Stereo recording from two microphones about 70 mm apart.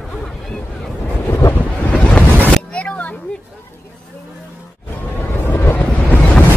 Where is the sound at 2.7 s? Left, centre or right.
Centre.